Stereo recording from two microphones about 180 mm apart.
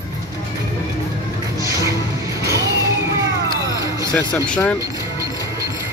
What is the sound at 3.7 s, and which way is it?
Music, 15° right (ahead or behind).